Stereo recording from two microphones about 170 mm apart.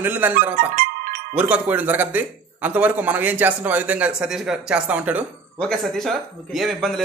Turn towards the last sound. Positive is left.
turn(degrees=0)  # may be behind; listen again after turning